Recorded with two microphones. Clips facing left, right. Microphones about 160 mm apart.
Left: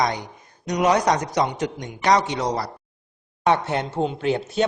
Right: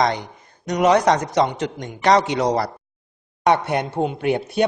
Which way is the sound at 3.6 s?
15° right (ahead or behind).